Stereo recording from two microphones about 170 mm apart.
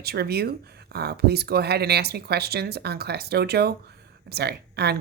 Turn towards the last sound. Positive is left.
turn(degrees=-70)  # may be behind; listen again after turning